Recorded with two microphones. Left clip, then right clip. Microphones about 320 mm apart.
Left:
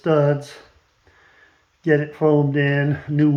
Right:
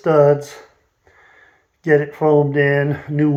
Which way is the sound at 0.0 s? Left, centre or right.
Centre.